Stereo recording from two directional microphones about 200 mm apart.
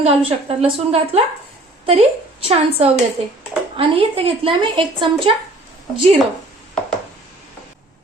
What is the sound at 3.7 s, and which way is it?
A woman's voice, 25° right (ahead or behind).